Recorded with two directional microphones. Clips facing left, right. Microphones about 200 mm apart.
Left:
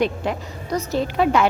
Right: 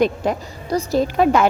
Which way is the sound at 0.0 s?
35° right (ahead or behind).